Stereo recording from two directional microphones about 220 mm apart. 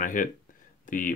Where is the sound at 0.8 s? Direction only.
35° left (ahead or behind).